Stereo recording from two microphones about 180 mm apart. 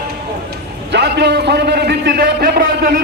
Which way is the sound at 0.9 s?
70° right (ahead or behind).